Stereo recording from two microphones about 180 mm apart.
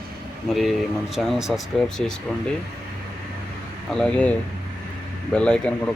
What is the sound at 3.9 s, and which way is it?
Speech, 5° left (ahead or behind).